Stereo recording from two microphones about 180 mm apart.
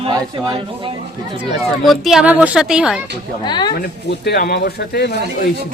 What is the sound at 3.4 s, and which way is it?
Speech, 25° left (ahead or behind).